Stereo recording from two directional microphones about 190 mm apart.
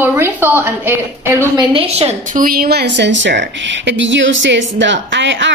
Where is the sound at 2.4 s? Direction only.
50° right (ahead or behind).